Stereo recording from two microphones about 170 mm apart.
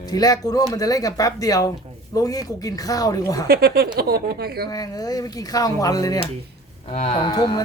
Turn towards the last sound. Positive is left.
turn(degrees=25)  # may be behind; listen again after turning